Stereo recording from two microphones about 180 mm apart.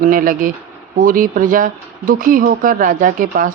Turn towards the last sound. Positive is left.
turn(degrees=-50)  # may be behind; listen again after turning